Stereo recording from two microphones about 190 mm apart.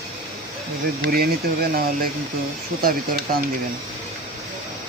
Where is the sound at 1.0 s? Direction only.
50° right (ahead or behind).